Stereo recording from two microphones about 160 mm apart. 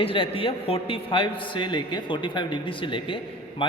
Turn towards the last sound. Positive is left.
turn(degrees=30)  # may be behind; listen again after turning